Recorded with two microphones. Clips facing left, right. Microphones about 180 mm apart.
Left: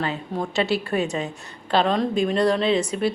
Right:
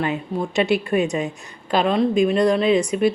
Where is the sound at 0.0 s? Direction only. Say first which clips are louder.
Right 3 dB; 15° right (ahead or behind).